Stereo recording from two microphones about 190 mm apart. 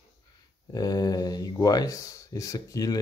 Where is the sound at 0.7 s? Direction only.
20° left (ahead or behind).